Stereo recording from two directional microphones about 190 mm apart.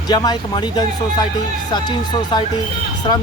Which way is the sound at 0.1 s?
20° left (ahead or behind).